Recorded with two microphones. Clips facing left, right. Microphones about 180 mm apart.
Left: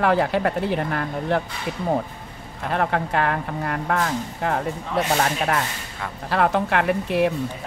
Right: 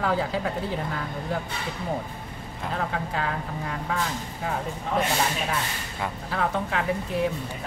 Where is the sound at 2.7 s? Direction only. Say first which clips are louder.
Left 7 dB; 65° left (ahead or behind).